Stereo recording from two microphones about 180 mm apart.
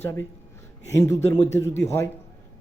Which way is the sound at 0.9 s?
20° left (ahead or behind).